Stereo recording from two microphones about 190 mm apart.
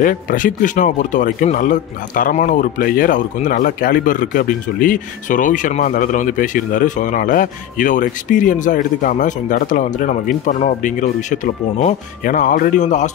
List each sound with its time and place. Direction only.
0.0 s a man's voice: 45° left (ahead or behind)